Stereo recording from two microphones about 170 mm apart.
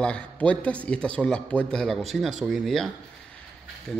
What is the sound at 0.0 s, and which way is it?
A man's voice, 5° left (ahead or behind).